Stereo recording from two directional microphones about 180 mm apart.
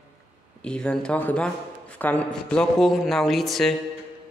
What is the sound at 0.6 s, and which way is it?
Speech, 5° left (ahead or behind).